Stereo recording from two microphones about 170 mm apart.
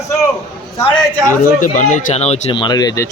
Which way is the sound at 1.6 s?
45° left (ahead or behind).